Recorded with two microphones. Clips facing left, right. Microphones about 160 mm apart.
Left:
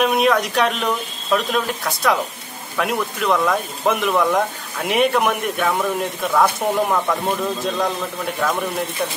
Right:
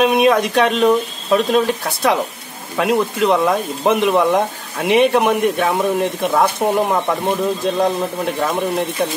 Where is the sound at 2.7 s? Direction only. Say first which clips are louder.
Right 6 dB; 25° right (ahead or behind).